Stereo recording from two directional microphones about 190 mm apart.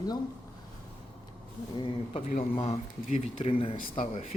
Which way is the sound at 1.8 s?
30° left (ahead or behind).